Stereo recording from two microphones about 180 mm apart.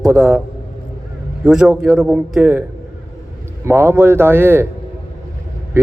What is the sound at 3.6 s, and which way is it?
A man's voice, 15° right (ahead or behind).